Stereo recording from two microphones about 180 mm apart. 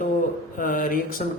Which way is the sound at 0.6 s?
50° left (ahead or behind).